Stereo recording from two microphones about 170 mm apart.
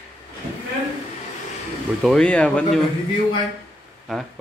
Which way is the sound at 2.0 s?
5° left (ahead or behind).